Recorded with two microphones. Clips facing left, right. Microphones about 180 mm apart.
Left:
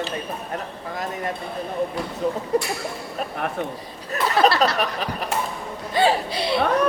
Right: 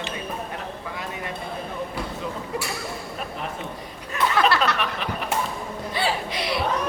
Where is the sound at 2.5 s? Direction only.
40° left (ahead or behind).